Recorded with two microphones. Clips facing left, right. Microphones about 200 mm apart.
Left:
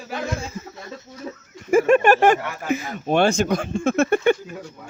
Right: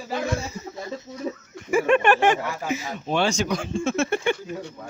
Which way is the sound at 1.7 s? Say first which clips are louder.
Left 4 dB; 45° left (ahead or behind).